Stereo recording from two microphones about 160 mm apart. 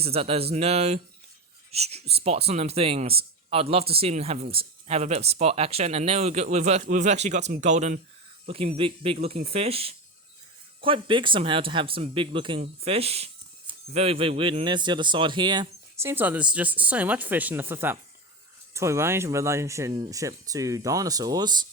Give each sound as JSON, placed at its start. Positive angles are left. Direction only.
{"t": 0.0, "sound": "speech", "side_deg": -40}
{"t": 8.4, "sound": "speech", "side_deg": -35}
{"t": 16.0, "sound": "speech", "side_deg": -15}